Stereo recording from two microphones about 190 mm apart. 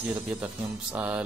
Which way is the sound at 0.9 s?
10° right (ahead or behind).